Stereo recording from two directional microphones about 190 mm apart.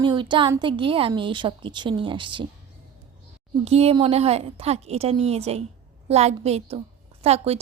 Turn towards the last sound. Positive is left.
turn(degrees=-35)  # may be behind; listen again after turning